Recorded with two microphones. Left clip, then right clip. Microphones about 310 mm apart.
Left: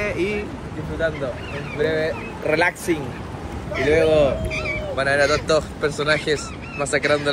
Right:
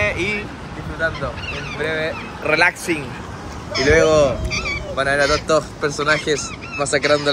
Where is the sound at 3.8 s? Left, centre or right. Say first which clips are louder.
Right 3 dB; centre.